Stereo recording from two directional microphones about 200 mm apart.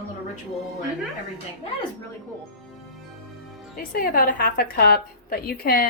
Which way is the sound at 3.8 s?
45° left (ahead or behind).